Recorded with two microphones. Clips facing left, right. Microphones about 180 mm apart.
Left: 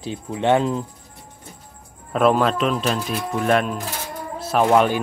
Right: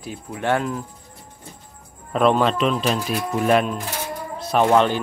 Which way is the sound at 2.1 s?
5° left (ahead or behind).